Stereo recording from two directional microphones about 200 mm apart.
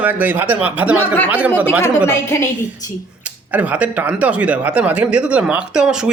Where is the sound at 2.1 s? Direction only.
15° left (ahead or behind).